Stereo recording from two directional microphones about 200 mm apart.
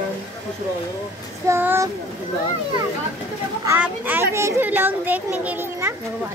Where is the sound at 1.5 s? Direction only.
10° right (ahead or behind).